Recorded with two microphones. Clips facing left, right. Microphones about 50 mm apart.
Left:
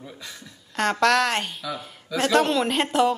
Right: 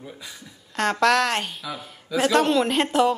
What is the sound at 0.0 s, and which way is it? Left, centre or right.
Speech, centre.